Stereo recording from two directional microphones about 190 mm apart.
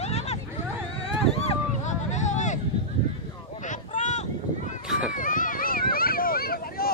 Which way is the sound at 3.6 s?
40° left (ahead or behind).